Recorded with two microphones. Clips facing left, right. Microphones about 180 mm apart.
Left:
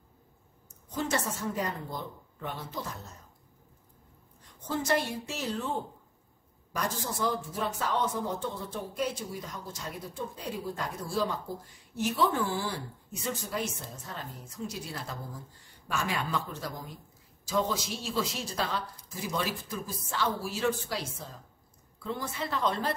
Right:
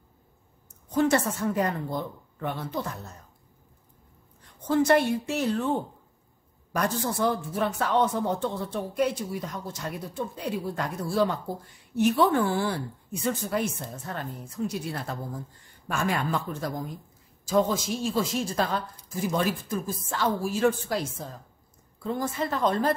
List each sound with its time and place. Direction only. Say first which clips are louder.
0.9 s speech: right 8 dB; 60° right (ahead or behind)
4.6 s speech: right 8 dB; 60° right (ahead or behind)
6.7 s a woman's voice: right 6 dB; 60° right (ahead or behind)
22.0 s a woman's voice: right 6 dB; 45° right (ahead or behind)